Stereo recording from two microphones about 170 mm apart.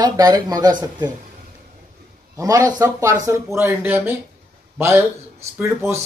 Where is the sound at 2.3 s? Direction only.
20° right (ahead or behind).